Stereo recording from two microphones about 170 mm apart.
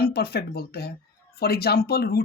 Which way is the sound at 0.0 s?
70° left (ahead or behind).